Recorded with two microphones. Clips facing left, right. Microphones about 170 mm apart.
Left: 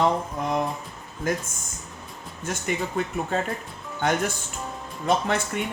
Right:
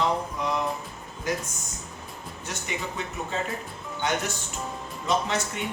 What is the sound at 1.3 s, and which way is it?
Speech, 50° left (ahead or behind).